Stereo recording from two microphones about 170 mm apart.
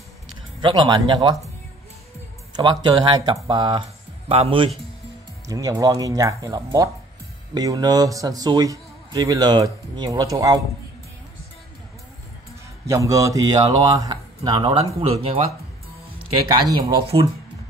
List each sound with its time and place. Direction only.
0.6 s a man's voice: 25° right (ahead or behind)
2.5 s a man's voice: 25° right (ahead or behind)
5.5 s a man's voice: 20° right (ahead or behind)
12.8 s a man's voice: 20° right (ahead or behind)
16.4 s a man's voice: 25° right (ahead or behind)